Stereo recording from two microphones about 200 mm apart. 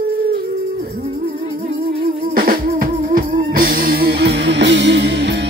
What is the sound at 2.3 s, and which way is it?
Music, 45° right (ahead or behind).